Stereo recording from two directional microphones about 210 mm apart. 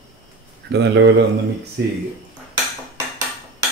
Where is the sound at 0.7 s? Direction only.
60° right (ahead or behind).